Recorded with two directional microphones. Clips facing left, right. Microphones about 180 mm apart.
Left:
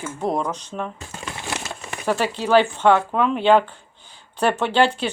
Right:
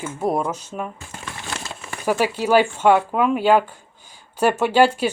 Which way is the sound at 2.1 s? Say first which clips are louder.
Right 1 dB; 10° right (ahead or behind).